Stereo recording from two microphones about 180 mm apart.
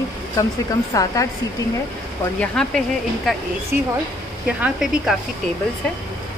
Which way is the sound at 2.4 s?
5° left (ahead or behind).